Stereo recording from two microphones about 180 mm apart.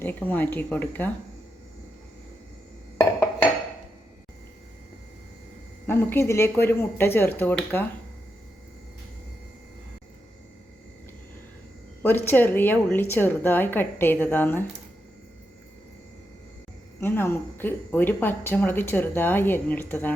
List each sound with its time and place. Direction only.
0.0 s speech: 10° left (ahead or behind)
5.9 s speech: 10° left (ahead or behind)
12.0 s speech: 10° left (ahead or behind)
17.0 s speech: 10° left (ahead or behind)